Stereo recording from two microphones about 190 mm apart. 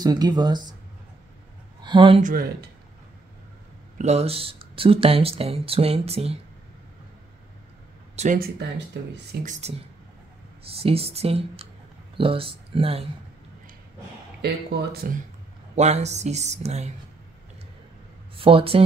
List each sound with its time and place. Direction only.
0.0 s speech: 20° right (ahead or behind)
1.8 s speech: 25° right (ahead or behind)
2.2 s speech: 50° right (ahead or behind)
4.0 s speech: 35° right (ahead or behind)
8.2 s speech: 45° right (ahead or behind)
8.5 s speech: 65° right (ahead or behind)
9.4 s speech: 40° right (ahead or behind)
10.8 s speech: 30° right (ahead or behind)
14.4 s speech: 60° right (ahead or behind)
15.7 s speech: 35° right (ahead or behind)
18.3 s speech: 30° right (ahead or behind)